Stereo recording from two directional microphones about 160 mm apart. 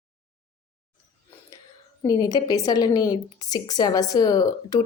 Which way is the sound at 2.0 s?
25° left (ahead or behind).